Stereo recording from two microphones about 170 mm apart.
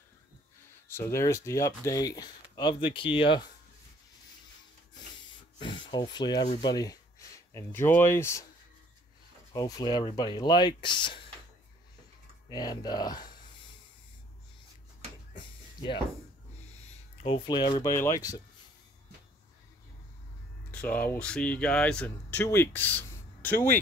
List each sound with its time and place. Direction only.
0.9 s speech: 15° left (ahead or behind); by 3.4 s 30° left (ahead or behind)
5.9 s speech: 25° left (ahead or behind)
9.5 s speech: 25° left (ahead or behind)
12.4 s speech: 25° left (ahead or behind)
15.3 s a sound: 30° left (ahead or behind)
16.8 s speech: 35° left (ahead or behind)
20.7 s speech: 10° left (ahead or behind)